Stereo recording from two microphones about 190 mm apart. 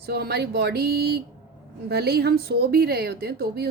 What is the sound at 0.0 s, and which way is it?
Speech, 55° right (ahead or behind).